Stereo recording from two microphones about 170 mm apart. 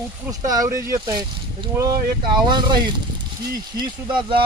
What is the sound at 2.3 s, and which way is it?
Speech, 25° right (ahead or behind).